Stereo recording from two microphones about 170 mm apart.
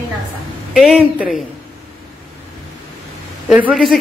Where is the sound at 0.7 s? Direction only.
5° right (ahead or behind).